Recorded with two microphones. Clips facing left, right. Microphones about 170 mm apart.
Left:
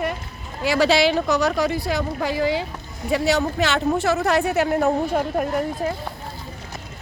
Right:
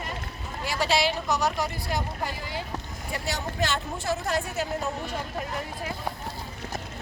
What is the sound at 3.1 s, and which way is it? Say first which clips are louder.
Speech: left 12 dB; 80° left.